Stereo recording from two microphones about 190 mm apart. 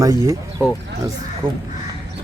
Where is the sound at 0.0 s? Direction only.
15° right (ahead or behind).